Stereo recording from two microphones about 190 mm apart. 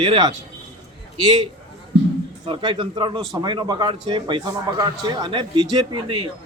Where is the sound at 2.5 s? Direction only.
25° right (ahead or behind).